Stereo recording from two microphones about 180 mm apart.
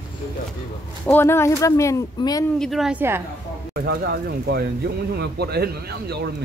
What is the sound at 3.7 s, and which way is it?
Speech, 60° right (ahead or behind).